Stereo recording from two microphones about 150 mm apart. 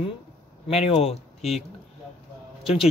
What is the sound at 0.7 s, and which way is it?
Speech, 45° left (ahead or behind).